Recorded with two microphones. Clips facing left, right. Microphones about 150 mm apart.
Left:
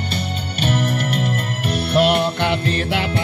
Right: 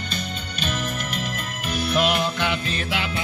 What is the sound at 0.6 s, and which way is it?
Music, 65° left (ahead or behind).